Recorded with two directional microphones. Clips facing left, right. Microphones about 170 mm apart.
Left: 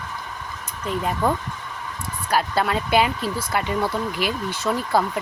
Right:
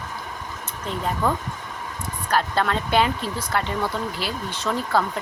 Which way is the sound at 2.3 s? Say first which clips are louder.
Left 1 dB; 10° left (ahead or behind).